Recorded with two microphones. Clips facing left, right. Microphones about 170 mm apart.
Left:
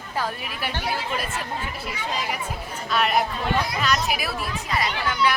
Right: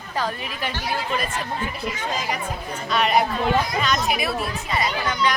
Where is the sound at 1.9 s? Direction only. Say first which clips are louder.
Left 1 dB; 45° right (ahead or behind).